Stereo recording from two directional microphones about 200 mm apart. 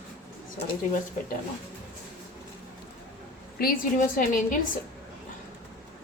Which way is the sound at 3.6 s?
45° left (ahead or behind).